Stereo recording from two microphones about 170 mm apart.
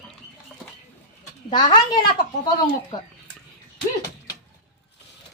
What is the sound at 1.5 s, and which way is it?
Speech, 25° left (ahead or behind).